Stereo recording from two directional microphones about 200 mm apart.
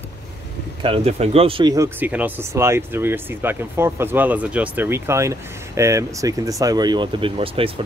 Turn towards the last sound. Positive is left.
turn(degrees=-25)  # may be behind; listen again after turning